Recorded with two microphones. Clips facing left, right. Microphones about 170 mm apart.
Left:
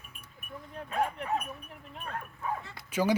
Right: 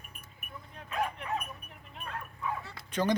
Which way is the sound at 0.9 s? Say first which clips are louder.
Left 3 dB; 35° left (ahead or behind).